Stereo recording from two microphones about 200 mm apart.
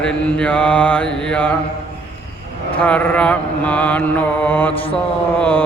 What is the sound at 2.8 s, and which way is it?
Mantra, 5° left (ahead or behind).